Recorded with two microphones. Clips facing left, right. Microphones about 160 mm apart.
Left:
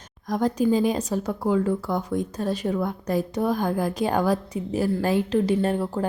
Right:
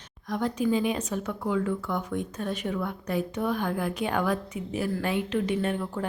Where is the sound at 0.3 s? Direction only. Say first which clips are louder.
Left 5 dB; 40° left (ahead or behind).